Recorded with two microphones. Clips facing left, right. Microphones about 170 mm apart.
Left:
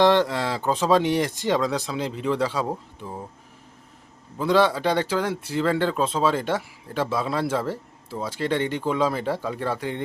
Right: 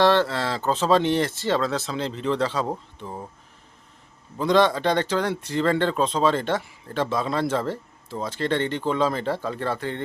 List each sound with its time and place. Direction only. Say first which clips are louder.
0.0 s speech: left 1 dB; 15° left (ahead or behind)
4.4 s speech: right 1 dB; 5° left (ahead or behind)